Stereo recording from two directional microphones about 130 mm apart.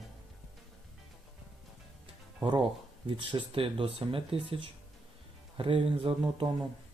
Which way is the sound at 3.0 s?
40° right (ahead or behind).